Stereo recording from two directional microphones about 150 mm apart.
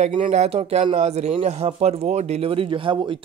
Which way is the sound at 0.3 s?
45° right (ahead or behind).